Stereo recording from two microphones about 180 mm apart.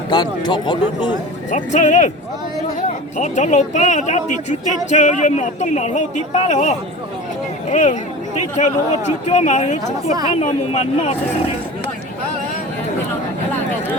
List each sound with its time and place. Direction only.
0.1 s speech: 25° left (ahead or behind)
1.5 s speech: 40° left (ahead or behind)
3.2 s speech: 40° left (ahead or behind)